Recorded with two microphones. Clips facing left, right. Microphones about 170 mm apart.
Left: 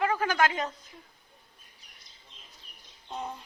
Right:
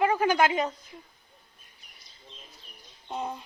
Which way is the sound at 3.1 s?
15° right (ahead or behind).